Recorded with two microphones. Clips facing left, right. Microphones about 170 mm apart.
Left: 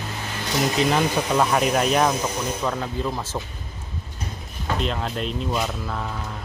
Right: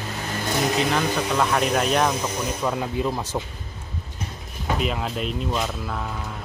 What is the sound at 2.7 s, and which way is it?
Speech, 10° right (ahead or behind).